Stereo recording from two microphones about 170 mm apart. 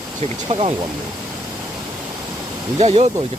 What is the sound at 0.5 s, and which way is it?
Speech, 35° right (ahead or behind).